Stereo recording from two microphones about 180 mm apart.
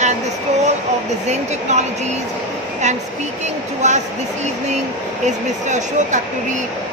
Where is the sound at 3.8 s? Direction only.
40° right (ahead or behind).